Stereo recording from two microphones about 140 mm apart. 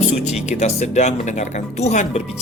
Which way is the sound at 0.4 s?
55° left (ahead or behind).